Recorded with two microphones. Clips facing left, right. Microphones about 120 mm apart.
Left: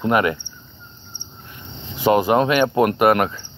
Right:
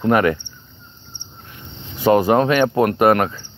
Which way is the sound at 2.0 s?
40° right (ahead or behind).